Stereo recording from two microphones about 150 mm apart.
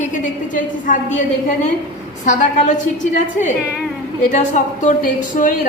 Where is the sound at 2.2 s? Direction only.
55° left (ahead or behind).